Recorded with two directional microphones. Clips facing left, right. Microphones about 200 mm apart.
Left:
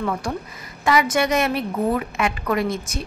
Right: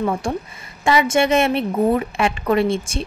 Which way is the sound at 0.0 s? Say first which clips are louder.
Right 3 dB; 25° right (ahead or behind).